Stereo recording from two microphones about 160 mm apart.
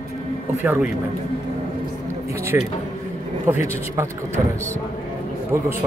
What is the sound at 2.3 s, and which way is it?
A man's voice, 15° right (ahead or behind).